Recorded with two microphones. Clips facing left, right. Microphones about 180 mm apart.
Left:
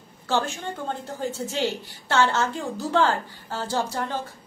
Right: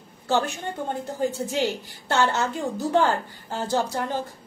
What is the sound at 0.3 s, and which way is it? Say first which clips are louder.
Speech: right 1 dB; 15° right (ahead or behind).